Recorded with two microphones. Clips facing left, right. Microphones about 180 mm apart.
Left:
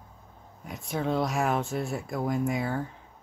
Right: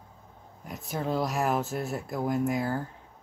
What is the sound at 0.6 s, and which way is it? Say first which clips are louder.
Speech: left 2 dB; centre (ahead or behind).